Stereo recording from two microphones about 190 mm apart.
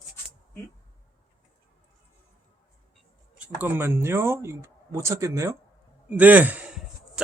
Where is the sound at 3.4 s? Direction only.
10° right (ahead or behind).